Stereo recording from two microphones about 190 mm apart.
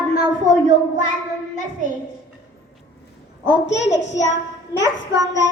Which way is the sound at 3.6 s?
70° left (ahead or behind).